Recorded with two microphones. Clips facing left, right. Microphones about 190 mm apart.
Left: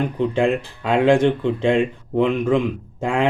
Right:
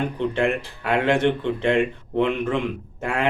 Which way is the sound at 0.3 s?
15° left (ahead or behind).